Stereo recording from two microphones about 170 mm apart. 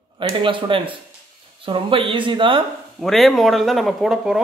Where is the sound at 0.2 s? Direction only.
30° right (ahead or behind).